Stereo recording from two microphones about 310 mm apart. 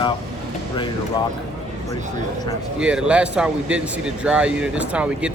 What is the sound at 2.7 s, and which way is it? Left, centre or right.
Speech, centre.